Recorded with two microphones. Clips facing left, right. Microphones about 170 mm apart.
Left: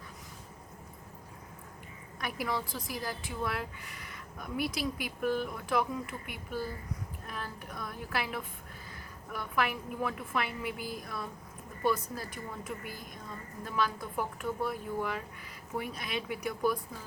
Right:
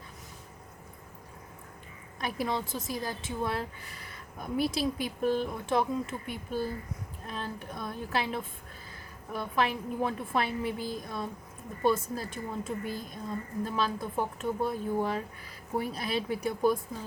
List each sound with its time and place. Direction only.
2.2 s a woman's voice: 25° right (ahead or behind)